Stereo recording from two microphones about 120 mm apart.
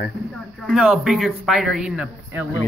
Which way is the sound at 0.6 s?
5° right (ahead or behind).